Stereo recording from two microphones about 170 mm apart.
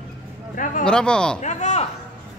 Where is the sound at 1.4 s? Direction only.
45° left (ahead or behind).